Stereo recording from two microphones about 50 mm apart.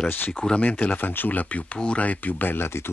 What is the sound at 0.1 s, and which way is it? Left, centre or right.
Speech, left.